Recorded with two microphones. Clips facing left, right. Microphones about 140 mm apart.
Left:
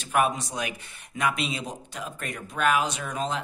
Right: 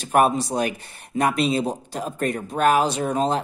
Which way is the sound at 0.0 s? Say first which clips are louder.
Right 6 dB; 40° right (ahead or behind).